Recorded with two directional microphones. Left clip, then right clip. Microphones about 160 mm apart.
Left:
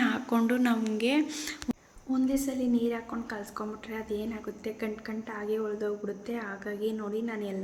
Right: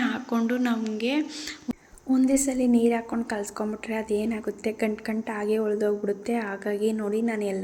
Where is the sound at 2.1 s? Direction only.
15° right (ahead or behind).